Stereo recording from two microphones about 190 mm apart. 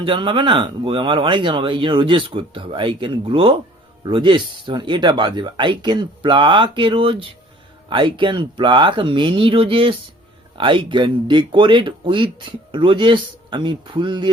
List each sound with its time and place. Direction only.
0.0 s speech: 25° right (ahead or behind)